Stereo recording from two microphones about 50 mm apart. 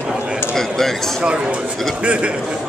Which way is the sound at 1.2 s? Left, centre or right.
Centre.